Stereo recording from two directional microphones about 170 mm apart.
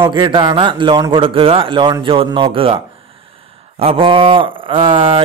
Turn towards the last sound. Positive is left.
turn(degrees=-30)  # may be behind; listen again after turning